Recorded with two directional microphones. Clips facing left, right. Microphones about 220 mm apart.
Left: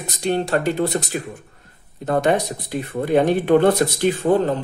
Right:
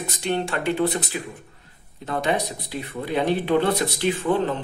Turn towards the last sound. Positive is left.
turn(degrees=40)  # may be behind; listen again after turning